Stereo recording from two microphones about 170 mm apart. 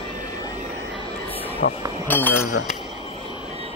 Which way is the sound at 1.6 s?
75° left (ahead or behind).